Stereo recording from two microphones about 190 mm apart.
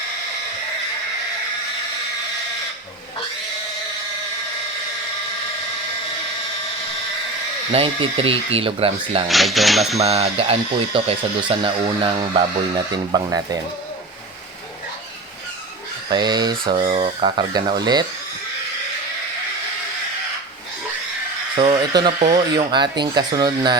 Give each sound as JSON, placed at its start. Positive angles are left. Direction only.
{"t": 7.7, "sound": "speech", "side_deg": -30}
{"t": 9.3, "sound": "speech", "side_deg": 0}
{"t": 10.0, "sound": "speech", "side_deg": -30}
{"t": 16.0, "sound": "speech", "side_deg": -20}
{"t": 16.8, "sound": "speech", "side_deg": -35}
{"t": 21.5, "sound": "speech", "side_deg": -25}